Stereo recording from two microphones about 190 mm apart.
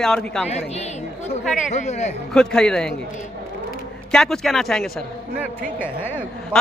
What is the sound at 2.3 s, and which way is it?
Speech, 5° left (ahead or behind).